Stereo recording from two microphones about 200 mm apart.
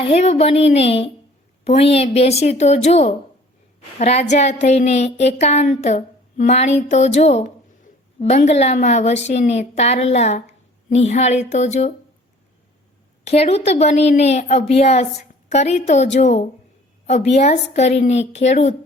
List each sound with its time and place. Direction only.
0.0 s a woman's voice: 30° left (ahead or behind)
13.2 s a woman's voice: 30° left (ahead or behind)